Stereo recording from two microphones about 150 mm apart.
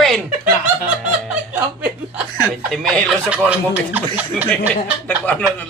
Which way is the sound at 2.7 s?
5° left (ahead or behind).